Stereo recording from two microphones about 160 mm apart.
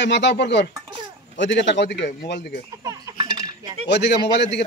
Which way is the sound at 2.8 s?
25° right (ahead or behind).